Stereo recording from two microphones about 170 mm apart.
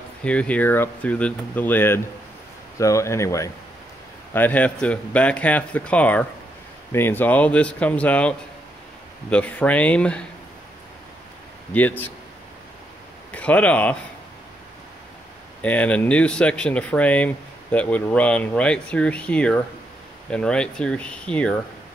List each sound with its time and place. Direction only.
0.2 s speech: 5° left (ahead or behind)
11.7 s speech: 10° left (ahead or behind)
13.3 s speech: 10° left (ahead or behind)
15.6 s speech: 10° left (ahead or behind)